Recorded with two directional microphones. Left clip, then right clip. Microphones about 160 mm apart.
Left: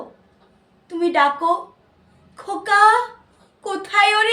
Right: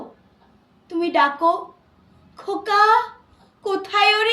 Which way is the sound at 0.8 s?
10° left (ahead or behind).